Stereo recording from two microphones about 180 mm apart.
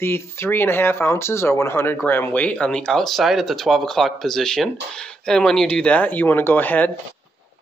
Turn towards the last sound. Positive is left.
turn(degrees=10)  # may be behind; listen again after turning